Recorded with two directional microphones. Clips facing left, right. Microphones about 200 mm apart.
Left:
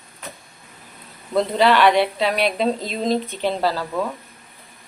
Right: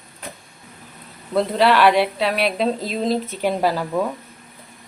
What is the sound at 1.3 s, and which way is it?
Speech, centre (ahead or behind).